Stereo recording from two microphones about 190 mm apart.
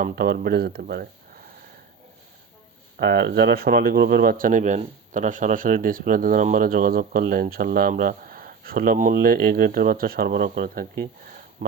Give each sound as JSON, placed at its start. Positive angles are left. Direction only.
{"t": 0.0, "sound": "speech", "side_deg": -50}
{"t": 3.0, "sound": "speech", "side_deg": -60}